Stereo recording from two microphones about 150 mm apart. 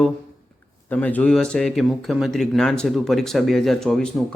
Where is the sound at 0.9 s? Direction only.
10° left (ahead or behind).